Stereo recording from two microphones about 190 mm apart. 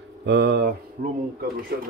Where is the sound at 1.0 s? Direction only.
45° right (ahead or behind).